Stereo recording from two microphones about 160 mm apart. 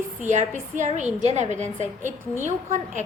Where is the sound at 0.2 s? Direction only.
50° right (ahead or behind).